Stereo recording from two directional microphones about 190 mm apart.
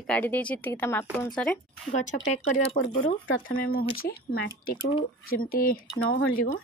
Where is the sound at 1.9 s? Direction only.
40° left (ahead or behind).